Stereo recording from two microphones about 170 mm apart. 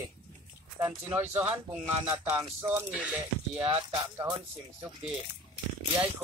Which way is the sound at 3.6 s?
30° right (ahead or behind).